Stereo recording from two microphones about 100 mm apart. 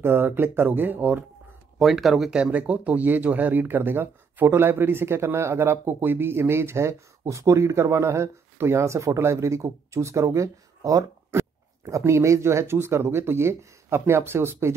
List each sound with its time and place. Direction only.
0.0 s speech: 25° right (ahead or behind)
1.8 s speech: centre (ahead or behind); by 14.8 s 25° right (ahead or behind)